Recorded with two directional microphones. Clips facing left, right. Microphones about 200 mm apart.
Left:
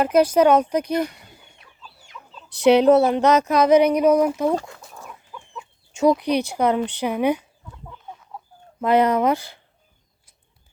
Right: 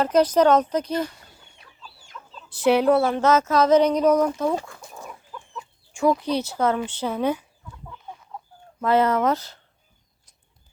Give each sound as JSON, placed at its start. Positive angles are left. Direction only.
{"t": 0.0, "sound": "speech", "side_deg": 10}
{"t": 2.2, "sound": "chicken", "side_deg": 0}
{"t": 2.6, "sound": "speech", "side_deg": 20}
{"t": 5.9, "sound": "speech", "side_deg": 20}
{"t": 8.8, "sound": "speech", "side_deg": 15}